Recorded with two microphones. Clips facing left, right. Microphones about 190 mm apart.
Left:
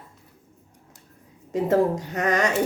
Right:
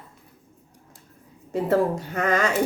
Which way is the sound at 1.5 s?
20° left (ahead or behind).